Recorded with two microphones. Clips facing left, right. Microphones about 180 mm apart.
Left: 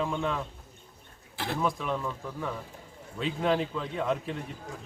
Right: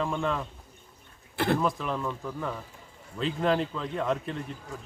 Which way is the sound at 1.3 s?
60° right (ahead or behind).